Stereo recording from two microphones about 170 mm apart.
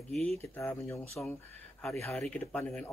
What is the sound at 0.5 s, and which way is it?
Speech, 15° left (ahead or behind).